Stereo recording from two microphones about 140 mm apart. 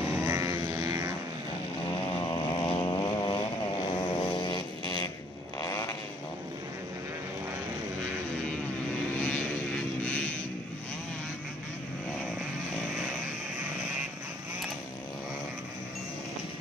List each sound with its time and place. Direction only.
0.1 s vehicle: 20° right (ahead or behind)
1.9 s vehicle: 35° left (ahead or behind)
4.0 s a sound: 35° left (ahead or behind)
5.6 s vehicle: 20° left (ahead or behind)
9.2 s vehicle: 10° left (ahead or behind)